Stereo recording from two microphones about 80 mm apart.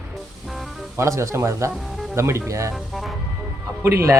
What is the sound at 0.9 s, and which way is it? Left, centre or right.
Speech, right.